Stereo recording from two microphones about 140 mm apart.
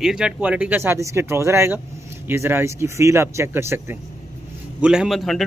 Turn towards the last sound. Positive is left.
turn(degrees=0)  # may be behind; listen again after turning